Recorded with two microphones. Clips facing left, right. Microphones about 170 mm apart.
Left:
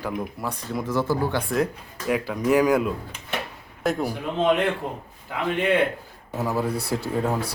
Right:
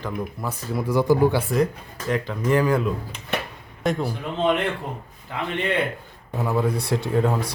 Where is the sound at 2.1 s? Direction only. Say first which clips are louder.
Left 1 dB; 10° left (ahead or behind).